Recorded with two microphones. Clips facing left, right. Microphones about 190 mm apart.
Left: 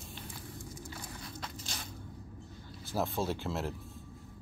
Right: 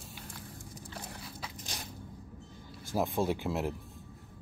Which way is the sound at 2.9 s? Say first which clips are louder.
Right 3 dB; 15° right (ahead or behind).